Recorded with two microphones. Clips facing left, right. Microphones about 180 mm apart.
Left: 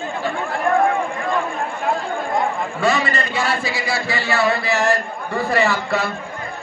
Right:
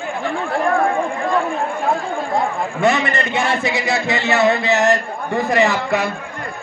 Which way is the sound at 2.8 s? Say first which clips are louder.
Right 3 dB; 20° right (ahead or behind).